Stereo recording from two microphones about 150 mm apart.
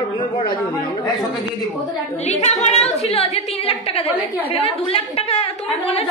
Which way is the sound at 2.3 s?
50° left (ahead or behind).